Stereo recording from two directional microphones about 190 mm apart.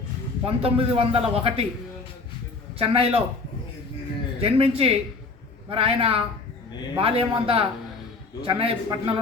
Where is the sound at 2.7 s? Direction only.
30° right (ahead or behind).